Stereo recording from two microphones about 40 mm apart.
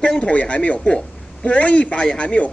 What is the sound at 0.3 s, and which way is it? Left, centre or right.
A man's voice, left.